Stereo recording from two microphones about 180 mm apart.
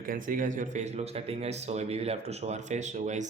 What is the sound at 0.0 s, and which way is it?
Speech, 50° right (ahead or behind).